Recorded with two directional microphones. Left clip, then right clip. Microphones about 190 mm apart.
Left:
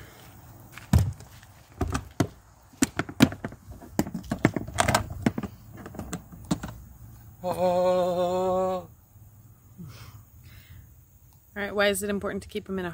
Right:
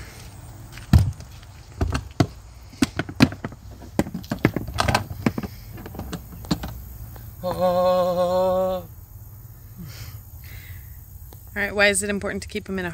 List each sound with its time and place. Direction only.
0.7 s a sound: 5° left (ahead or behind)
4.0 s computer keyboard: 5° left (ahead or behind)
5.9 s vehicle: 5° right (ahead or behind)
7.4 s mantra: 30° left (ahead or behind)
8.5 s mantra: 15° left (ahead or behind)
11.5 s speech: centre (ahead or behind)